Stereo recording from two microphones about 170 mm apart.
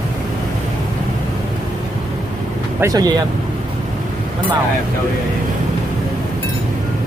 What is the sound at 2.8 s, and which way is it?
Speech, 20° right (ahead or behind).